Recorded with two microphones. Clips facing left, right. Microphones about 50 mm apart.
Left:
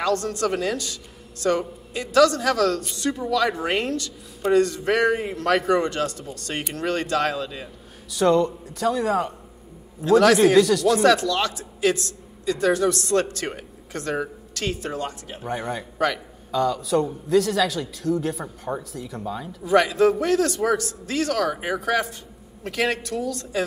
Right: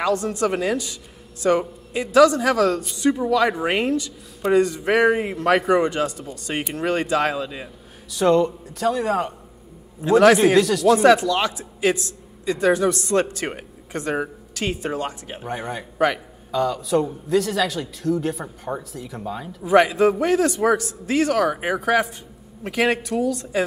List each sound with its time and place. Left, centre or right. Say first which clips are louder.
0.0 s a man's voice: right 2 dB; centre
8.1 s a man's voice: right 1 dB; centre
10.0 s a man's voice: right 2 dB; centre
11.0 s a man's voice: right 3 dB; centre
15.4 s a man's voice: left 1 dB; centre
16.0 s a man's voice: right 3 dB; centre
16.5 s a man's voice: right 1 dB; centre
19.6 s a man's voice: right 2 dB; centre